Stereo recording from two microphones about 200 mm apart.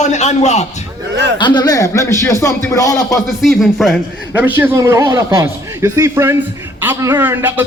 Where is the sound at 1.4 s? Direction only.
20° left (ahead or behind).